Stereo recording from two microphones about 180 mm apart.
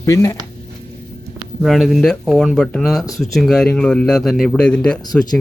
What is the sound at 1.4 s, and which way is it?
A man's voice, centre (ahead or behind).